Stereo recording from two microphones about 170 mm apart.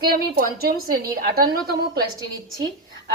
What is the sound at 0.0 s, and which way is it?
A woman's voice, 65° right (ahead or behind).